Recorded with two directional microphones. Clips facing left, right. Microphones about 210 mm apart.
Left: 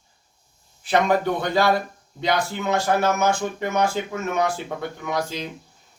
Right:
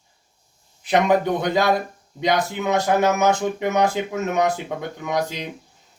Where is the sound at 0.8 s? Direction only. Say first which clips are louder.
Right 2 dB; 15° right (ahead or behind).